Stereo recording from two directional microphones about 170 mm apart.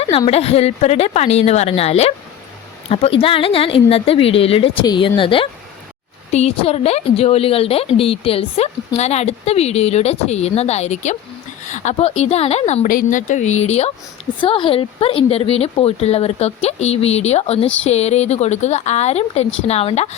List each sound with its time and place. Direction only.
0.3 s a woman's voice: 35° left (ahead or behind)